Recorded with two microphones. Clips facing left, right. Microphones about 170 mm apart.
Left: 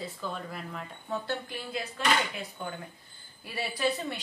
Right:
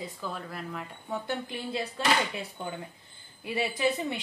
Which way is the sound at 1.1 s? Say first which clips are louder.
Right 1 dB; 15° right (ahead or behind).